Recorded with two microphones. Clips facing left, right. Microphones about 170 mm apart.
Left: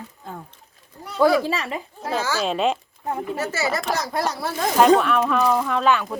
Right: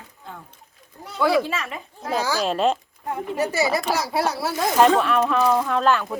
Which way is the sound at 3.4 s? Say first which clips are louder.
Right 7 dB; 15° right (ahead or behind).